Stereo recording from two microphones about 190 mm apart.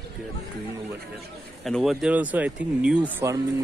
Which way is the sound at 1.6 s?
Centre (ahead or behind).